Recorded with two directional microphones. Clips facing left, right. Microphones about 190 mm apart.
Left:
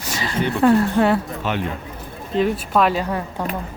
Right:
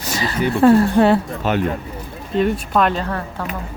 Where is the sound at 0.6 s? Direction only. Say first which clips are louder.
Right 4 dB; 35° right (ahead or behind).